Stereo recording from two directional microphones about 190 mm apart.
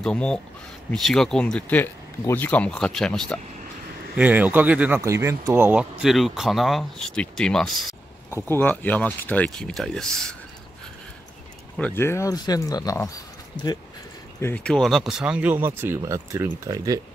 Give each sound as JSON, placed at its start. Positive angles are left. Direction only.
{"t": 0.0, "sound": "speech", "side_deg": 5}
{"t": 4.1, "sound": "speech", "side_deg": -10}
{"t": 11.7, "sound": "speech", "side_deg": 10}
{"t": 14.4, "sound": "speech", "side_deg": 5}